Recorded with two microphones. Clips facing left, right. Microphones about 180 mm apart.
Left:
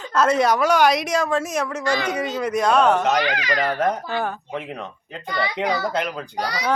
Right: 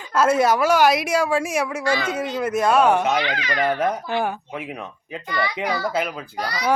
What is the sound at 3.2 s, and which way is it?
Speech, 40° left (ahead or behind).